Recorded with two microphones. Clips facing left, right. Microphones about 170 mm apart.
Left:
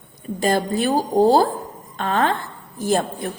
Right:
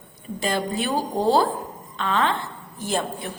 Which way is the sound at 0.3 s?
45° left (ahead or behind).